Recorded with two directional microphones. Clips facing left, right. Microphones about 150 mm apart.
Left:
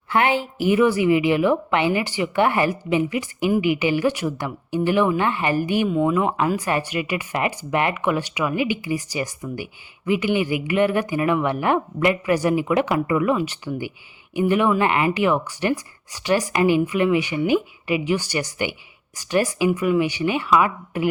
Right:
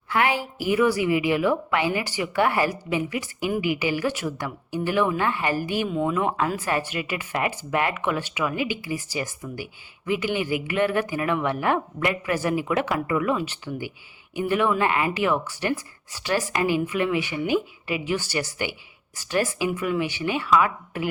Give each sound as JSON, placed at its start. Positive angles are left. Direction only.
{"t": 0.1, "sound": "a woman's voice", "side_deg": 25}
{"t": 5.9, "sound": "speech", "side_deg": 5}